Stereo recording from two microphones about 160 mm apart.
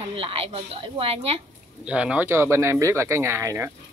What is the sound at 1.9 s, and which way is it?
A woman's voice, 5° right (ahead or behind).